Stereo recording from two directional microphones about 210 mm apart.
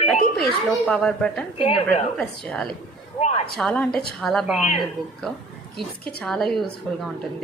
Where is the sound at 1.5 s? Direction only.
25° left (ahead or behind).